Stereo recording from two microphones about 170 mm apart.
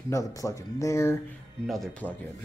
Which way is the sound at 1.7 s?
Centre (ahead or behind).